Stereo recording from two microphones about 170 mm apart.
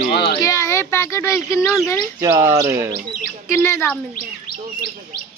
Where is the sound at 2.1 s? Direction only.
15° right (ahead or behind).